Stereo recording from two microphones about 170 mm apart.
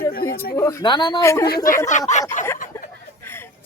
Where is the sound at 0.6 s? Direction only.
20° left (ahead or behind).